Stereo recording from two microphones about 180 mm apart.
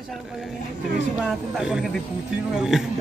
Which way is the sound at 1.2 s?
5° right (ahead or behind).